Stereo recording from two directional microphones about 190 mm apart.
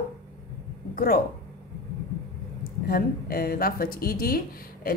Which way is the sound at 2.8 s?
50° left (ahead or behind).